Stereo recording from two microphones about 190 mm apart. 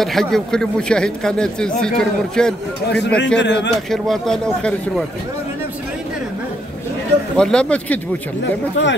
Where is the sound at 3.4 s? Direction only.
65° left (ahead or behind).